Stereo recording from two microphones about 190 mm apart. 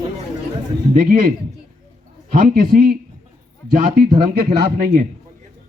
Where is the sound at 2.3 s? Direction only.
45° right (ahead or behind).